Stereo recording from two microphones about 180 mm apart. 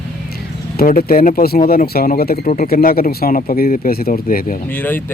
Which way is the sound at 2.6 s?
55° left (ahead or behind).